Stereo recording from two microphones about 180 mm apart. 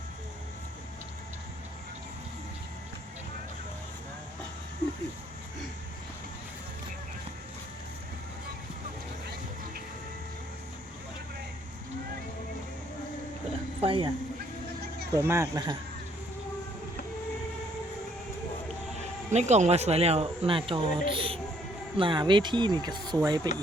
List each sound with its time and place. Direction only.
13.8 s a man's voice: 30° right (ahead or behind)
15.1 s speech: 15° right (ahead or behind)
19.3 s speech: 40° right (ahead or behind); by 23.5 s 20° right (ahead or behind)